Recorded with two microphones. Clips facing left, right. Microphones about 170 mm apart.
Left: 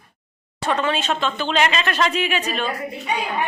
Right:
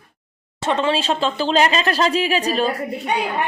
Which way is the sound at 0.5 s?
25° right (ahead or behind).